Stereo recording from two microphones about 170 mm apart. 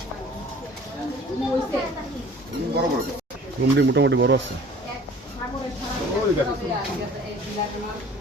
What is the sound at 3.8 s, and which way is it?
Speech, 90° right.